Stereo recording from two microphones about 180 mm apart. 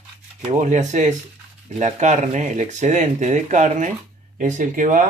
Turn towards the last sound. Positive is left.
turn(degrees=-45)  # may be behind; listen again after turning